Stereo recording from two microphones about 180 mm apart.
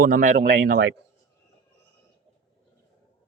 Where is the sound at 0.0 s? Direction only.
50° right (ahead or behind).